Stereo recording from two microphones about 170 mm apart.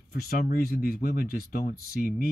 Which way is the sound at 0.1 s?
65° left (ahead or behind).